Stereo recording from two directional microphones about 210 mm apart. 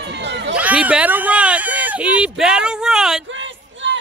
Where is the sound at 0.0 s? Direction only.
55° right (ahead or behind).